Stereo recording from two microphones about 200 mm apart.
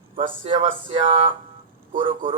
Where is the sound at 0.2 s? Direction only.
25° right (ahead or behind).